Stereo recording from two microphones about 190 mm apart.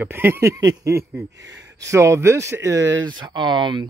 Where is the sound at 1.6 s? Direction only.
75° right (ahead or behind).